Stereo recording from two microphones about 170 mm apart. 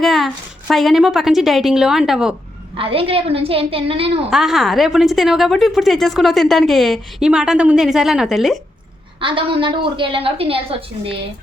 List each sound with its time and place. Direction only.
0.0 s a sound: centre (ahead or behind)
0.7 s a woman's voice: centre (ahead or behind)
2.7 s a woman's voice: 30° right (ahead or behind)
4.3 s a woman's voice: centre (ahead or behind)
9.2 s a woman's voice: 30° right (ahead or behind)